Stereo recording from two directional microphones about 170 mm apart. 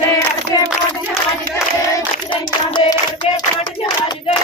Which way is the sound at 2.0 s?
25° left (ahead or behind).